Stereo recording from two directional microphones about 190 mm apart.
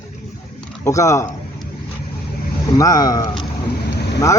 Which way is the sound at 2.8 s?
20° left (ahead or behind).